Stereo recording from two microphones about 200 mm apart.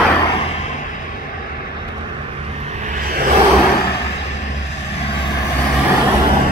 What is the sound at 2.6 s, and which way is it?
Vehicle, 35° right (ahead or behind).